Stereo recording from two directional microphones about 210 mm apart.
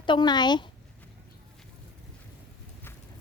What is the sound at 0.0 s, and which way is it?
Speech, 20° left (ahead or behind).